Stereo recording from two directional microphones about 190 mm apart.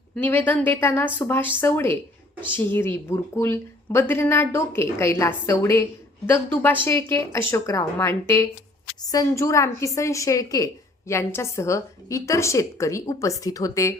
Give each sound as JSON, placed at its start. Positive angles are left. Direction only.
{"t": 0.2, "sound": "speech", "side_deg": 10}